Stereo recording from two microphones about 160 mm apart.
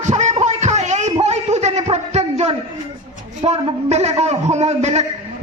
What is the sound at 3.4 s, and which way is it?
A man's voice, 40° right (ahead or behind).